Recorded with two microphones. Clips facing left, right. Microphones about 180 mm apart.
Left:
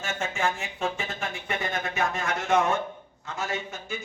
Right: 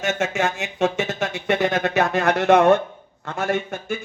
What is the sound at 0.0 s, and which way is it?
Speech, 75° right (ahead or behind).